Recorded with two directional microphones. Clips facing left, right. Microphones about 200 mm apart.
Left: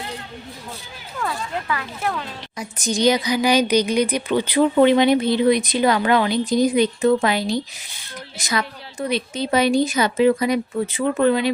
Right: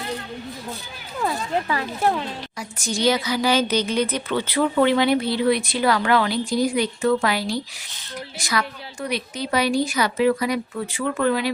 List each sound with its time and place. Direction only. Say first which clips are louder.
1.2 s speech: right 3 dB; 30° right (ahead or behind)
2.6 s a woman's voice: left 4 dB; 20° left (ahead or behind)